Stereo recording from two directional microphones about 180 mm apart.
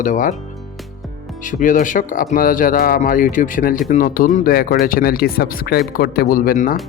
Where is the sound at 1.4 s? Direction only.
45° left (ahead or behind).